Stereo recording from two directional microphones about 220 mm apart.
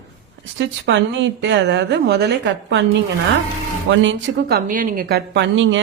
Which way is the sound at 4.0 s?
55° right (ahead or behind).